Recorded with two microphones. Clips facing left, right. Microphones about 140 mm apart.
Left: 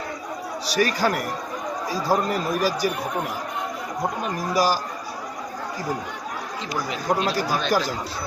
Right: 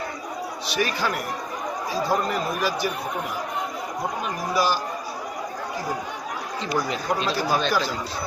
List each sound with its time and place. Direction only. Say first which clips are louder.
0.7 s speech: left 4 dB; 40° left (ahead or behind)
4.5 s speech: left 2 dB; 40° left (ahead or behind)
7.7 s speech: left 2 dB; 45° left (ahead or behind)